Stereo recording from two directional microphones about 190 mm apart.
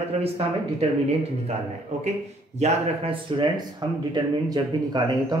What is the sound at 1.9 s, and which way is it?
Speech, 35° right (ahead or behind).